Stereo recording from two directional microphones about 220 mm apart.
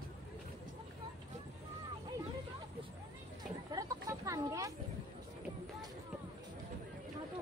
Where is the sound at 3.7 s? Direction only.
15° right (ahead or behind).